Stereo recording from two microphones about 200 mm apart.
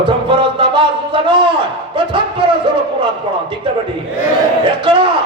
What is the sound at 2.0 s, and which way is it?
Speech, 25° right (ahead or behind).